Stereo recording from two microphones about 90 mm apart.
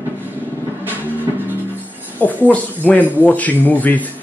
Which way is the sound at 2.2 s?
15° left (ahead or behind).